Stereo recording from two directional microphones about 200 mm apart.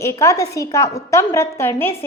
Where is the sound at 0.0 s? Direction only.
15° left (ahead or behind).